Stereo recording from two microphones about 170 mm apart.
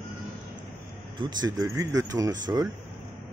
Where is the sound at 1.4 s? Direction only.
20° right (ahead or behind).